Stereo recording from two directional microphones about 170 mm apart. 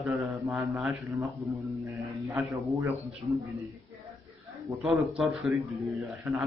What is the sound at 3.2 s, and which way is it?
Speech, 35° right (ahead or behind).